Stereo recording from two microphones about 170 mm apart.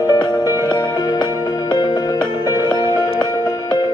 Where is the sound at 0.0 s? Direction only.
20° left (ahead or behind).